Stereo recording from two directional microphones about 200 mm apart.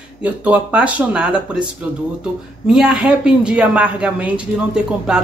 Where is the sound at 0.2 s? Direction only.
5° right (ahead or behind).